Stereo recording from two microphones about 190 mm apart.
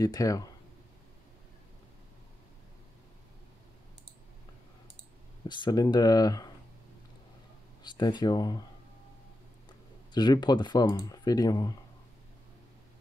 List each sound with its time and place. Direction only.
0.0 s speech: 20° left (ahead or behind)
5.5 s speech: 20° left (ahead or behind)
7.8 s speech: 25° left (ahead or behind)
10.1 s speech: 20° left (ahead or behind)